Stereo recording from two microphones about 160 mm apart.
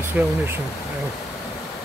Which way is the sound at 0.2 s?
10° right (ahead or behind).